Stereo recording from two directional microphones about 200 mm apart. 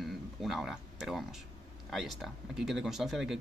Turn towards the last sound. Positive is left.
turn(degrees=0)  # may be behind; listen again after turning